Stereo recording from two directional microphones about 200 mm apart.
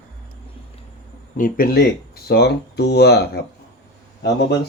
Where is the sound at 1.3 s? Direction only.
45° left (ahead or behind).